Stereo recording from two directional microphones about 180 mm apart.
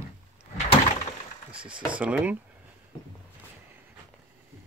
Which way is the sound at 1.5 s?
5° right (ahead or behind).